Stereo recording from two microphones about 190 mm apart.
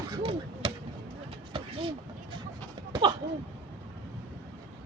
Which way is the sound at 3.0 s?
25° right (ahead or behind).